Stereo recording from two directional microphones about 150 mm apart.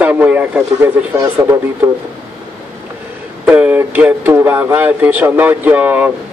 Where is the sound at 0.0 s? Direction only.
10° right (ahead or behind).